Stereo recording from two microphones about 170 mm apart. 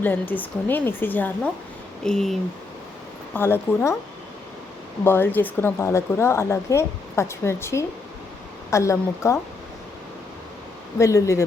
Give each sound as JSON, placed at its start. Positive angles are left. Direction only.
{"t": 0.0, "sound": "speech", "side_deg": 10}
{"t": 3.3, "sound": "speech", "side_deg": 15}
{"t": 5.0, "sound": "speech", "side_deg": 15}
{"t": 10.9, "sound": "speech", "side_deg": 15}